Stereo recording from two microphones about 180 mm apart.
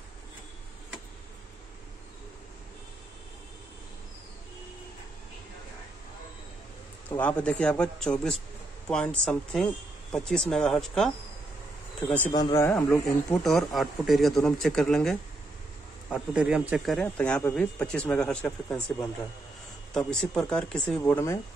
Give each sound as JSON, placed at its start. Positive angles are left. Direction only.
{"t": 7.1, "sound": "a man's voice", "side_deg": 10}
{"t": 12.3, "sound": "a man's voice", "side_deg": 30}
{"t": 12.5, "sound": "a man's voice", "side_deg": 15}
{"t": 13.3, "sound": "speech", "side_deg": 0}